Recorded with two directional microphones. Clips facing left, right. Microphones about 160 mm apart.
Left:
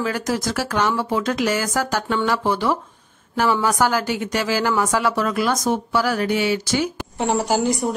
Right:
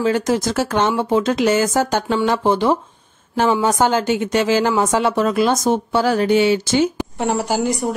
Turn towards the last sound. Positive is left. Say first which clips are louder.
# even
turn(degrees=0)  # may be behind; listen again after turning